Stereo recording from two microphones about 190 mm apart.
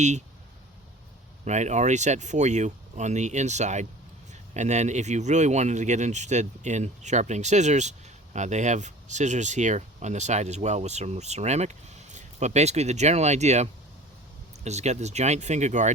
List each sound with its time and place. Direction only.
1.5 s speech: 35° right (ahead or behind)